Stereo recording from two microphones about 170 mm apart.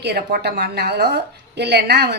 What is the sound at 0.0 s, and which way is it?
Speech, 70° right (ahead or behind).